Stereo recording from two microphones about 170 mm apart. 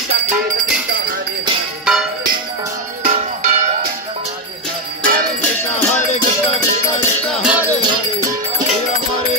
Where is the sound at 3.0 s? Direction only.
40° right (ahead or behind).